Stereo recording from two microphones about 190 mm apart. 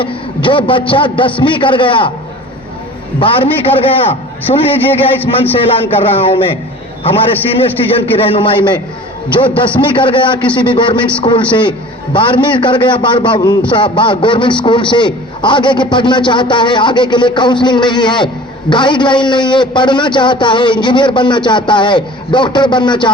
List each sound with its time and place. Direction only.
0.0 s a man's voice: 25° left (ahead or behind)
3.2 s a man's voice: 30° left (ahead or behind)
7.9 s a man's voice: 30° left (ahead or behind)